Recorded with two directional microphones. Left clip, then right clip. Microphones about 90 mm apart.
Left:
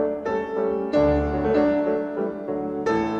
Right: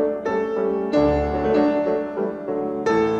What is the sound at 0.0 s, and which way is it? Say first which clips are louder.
Music: right 3 dB; 30° right (ahead or behind).